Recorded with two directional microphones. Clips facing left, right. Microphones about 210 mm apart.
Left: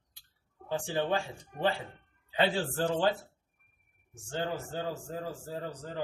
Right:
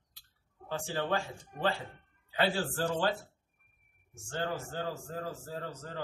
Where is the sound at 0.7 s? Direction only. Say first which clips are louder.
Left 3 dB; 15° left (ahead or behind).